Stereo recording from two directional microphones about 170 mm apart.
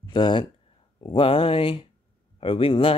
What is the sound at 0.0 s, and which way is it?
Speech, 25° left (ahead or behind).